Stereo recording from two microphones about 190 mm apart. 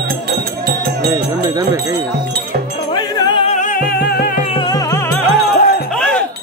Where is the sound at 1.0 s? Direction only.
20° right (ahead or behind).